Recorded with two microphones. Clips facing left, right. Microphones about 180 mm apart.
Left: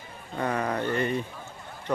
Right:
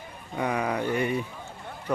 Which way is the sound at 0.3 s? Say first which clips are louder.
Right 1 dB; 10° right (ahead or behind).